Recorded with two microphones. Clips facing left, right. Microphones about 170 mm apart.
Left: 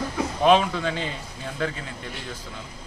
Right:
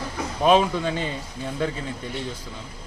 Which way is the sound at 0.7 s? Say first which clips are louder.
Right 2 dB; 15° right (ahead or behind).